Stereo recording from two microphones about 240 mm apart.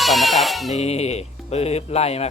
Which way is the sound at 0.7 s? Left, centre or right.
Left.